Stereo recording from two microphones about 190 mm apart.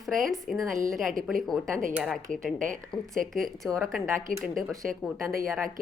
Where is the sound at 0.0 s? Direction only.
Centre (ahead or behind).